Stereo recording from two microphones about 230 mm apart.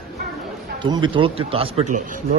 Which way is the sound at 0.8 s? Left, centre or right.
Centre.